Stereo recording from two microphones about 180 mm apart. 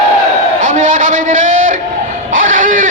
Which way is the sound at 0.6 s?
45° right (ahead or behind).